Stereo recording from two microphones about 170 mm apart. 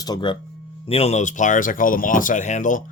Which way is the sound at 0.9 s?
35° left (ahead or behind).